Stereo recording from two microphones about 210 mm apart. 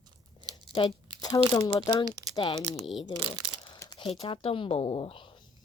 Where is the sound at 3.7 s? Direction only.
20° left (ahead or behind).